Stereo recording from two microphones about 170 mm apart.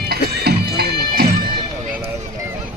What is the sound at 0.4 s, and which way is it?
Music, 65° right (ahead or behind).